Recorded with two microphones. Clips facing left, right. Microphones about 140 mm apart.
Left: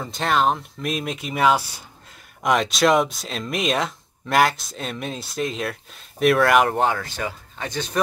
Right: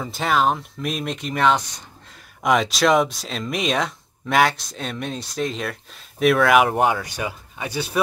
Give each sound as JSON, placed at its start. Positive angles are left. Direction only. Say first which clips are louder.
{"t": 0.0, "sound": "speech", "louder": "even", "side_deg": 0}